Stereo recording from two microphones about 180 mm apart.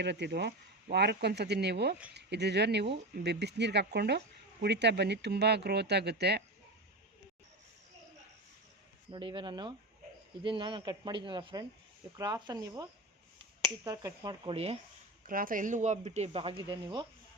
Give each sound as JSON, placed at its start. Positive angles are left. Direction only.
{"t": 0.0, "sound": "speech", "side_deg": -70}
{"t": 9.1, "sound": "speech", "side_deg": -25}
{"t": 15.3, "sound": "speech", "side_deg": -50}